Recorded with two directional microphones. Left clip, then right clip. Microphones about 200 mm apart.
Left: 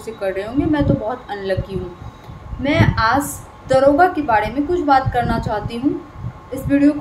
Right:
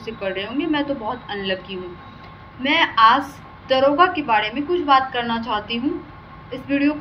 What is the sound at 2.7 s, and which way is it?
A woman's voice, 15° left (ahead or behind).